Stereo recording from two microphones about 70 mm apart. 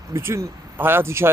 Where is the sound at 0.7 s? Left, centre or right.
Right.